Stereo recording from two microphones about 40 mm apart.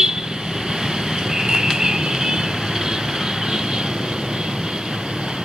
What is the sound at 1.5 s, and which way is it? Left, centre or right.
Vehicle, centre.